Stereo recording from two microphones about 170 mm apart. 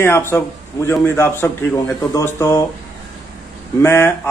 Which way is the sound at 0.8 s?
15° left (ahead or behind).